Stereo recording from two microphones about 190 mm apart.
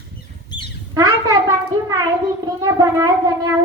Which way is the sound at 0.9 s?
20° right (ahead or behind).